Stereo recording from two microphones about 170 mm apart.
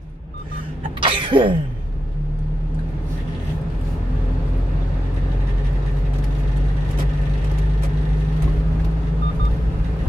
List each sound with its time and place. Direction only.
1.0 s sneeze: 30° right (ahead or behind)